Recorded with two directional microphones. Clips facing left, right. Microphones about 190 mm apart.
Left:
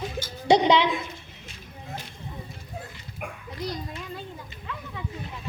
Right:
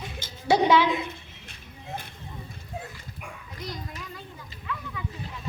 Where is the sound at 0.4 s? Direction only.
20° left (ahead or behind).